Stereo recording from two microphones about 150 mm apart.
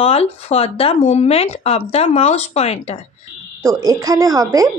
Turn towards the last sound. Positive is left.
turn(degrees=-25)  # may be behind; listen again after turning